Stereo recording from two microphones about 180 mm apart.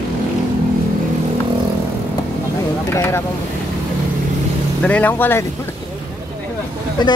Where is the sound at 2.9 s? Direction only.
15° left (ahead or behind).